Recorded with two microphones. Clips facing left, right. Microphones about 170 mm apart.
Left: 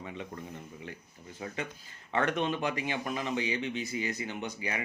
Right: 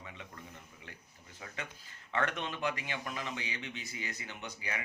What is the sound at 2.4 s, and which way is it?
Speech, 20° left (ahead or behind).